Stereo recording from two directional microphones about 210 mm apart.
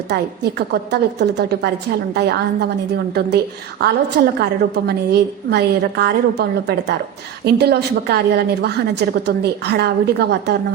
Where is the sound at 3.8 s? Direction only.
50° right (ahead or behind).